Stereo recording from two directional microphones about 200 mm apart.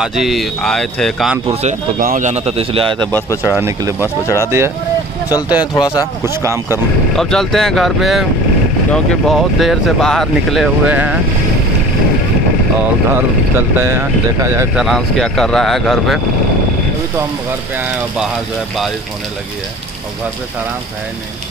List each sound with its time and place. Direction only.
0.0 s speech: centre (ahead or behind)
1.5 s a man's voice: 35° right (ahead or behind)
3.0 s speech: 10° left (ahead or behind)
3.4 s speech: 15° right (ahead or behind)
4.0 s speech: 15° left (ahead or behind)
4.5 s speech: 15° right (ahead or behind)
7.2 s speech: centre (ahead or behind)
13.1 s speech: 10° right (ahead or behind)
14.8 s speech: centre (ahead or behind)
17.7 s speech: 5° right (ahead or behind)